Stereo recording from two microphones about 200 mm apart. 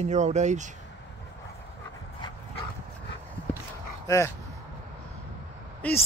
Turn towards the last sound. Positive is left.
turn(degrees=10)  # may be behind; listen again after turning